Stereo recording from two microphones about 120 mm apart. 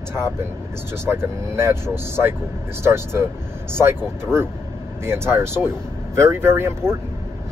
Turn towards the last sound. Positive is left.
turn(degrees=-20)  # may be behind; listen again after turning